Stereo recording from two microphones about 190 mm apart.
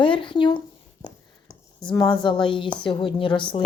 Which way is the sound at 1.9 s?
25° left (ahead or behind).